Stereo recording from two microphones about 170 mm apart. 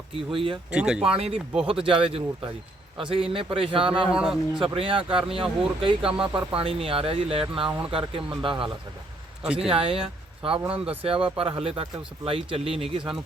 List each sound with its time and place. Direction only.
0.3 s speech: 30° right (ahead or behind)
0.7 s a man's voice: 5° right (ahead or behind)
1.1 s speech: 30° right (ahead or behind)
4.1 s a man's voice: 5° right (ahead or behind)
4.6 s speech: 30° right (ahead or behind)